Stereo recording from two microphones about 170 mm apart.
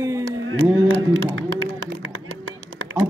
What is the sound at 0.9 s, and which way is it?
Speech, 90° right.